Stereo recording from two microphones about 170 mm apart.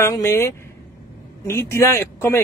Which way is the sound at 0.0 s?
15° left (ahead or behind).